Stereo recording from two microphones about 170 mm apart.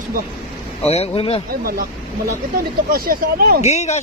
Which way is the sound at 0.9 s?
35° left (ahead or behind).